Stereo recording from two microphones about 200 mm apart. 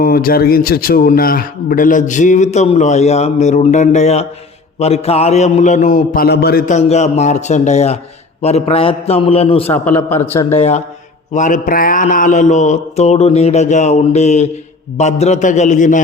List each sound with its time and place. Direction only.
0.0 s a man's voice: 45° left (ahead or behind); by 9.6 s 30° left (ahead or behind)
9.6 s a man's voice: 10° left (ahead or behind)
10.5 s a man's voice: 35° left (ahead or behind)